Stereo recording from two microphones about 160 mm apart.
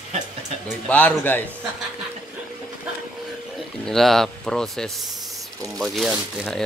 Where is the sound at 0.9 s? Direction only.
10° left (ahead or behind).